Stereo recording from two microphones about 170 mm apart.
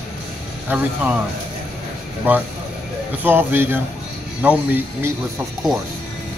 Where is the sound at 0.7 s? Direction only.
10° right (ahead or behind).